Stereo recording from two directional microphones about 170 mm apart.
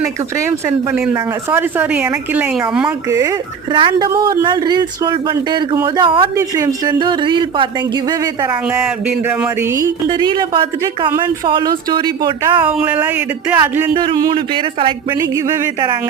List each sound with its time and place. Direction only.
0.3 s a woman's voice: 15° right (ahead or behind)
3.1 s speech: 20° right (ahead or behind)
3.7 s speech: 30° right (ahead or behind)
9.0 s a woman's voice: 10° right (ahead or behind); by 12.6 s 25° right (ahead or behind)
12.6 s a woman's voice: 10° right (ahead or behind)
14.0 s speech: 30° right (ahead or behind)
15.2 s a woman's voice: 15° right (ahead or behind)